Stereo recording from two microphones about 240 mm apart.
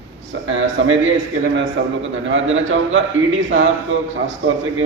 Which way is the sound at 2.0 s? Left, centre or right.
Right.